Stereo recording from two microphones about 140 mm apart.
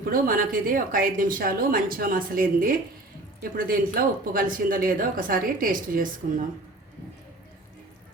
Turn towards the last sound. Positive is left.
turn(degrees=-75)  # may be behind; listen again after turning